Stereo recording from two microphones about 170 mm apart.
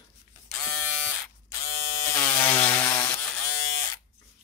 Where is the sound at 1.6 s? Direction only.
30° left (ahead or behind).